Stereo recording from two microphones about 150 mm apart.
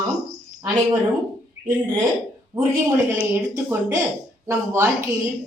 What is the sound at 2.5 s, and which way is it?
Speech, 20° right (ahead or behind).